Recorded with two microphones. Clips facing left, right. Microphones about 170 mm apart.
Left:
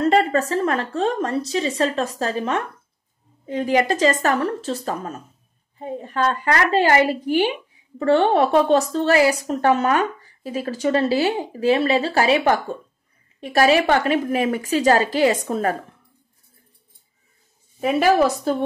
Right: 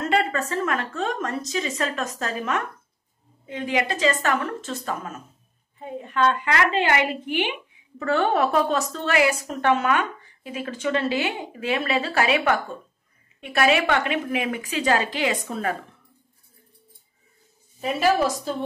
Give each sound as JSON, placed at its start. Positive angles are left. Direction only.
{"t": 0.0, "sound": "a woman's voice", "side_deg": 35}
{"t": 17.7, "sound": "a woman's voice", "side_deg": 60}